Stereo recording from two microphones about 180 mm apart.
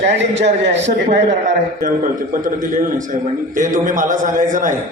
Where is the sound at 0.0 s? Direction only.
75° right (ahead or behind).